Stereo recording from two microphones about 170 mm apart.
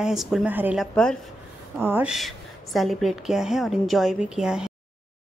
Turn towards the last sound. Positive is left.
turn(degrees=-5)  # may be behind; listen again after turning